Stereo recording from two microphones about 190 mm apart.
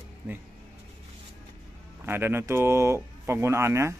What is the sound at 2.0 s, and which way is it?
Speech, 10° right (ahead or behind).